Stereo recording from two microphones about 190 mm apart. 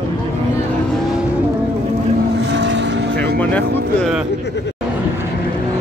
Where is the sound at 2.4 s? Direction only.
70° right (ahead or behind).